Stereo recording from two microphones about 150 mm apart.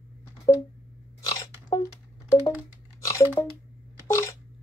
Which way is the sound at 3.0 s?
20° left (ahead or behind).